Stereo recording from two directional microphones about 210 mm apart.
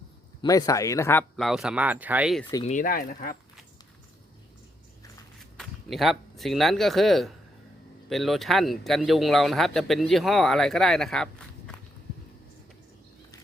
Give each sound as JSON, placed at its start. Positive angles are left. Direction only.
{"t": 0.4, "sound": "speech", "side_deg": 15}
{"t": 1.4, "sound": "speech", "side_deg": 0}
{"t": 2.4, "sound": "speech", "side_deg": 15}
{"t": 2.6, "sound": "speech", "side_deg": 40}
{"t": 5.5, "sound": "speech", "side_deg": 0}